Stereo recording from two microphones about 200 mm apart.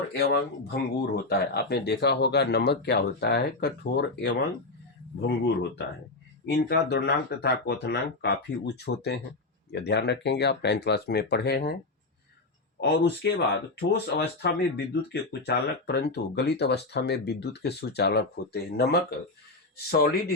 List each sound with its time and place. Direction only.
0.1 s speech: 55° left (ahead or behind)
6.4 s speech: 55° left (ahead or behind)
12.8 s speech: 55° left (ahead or behind)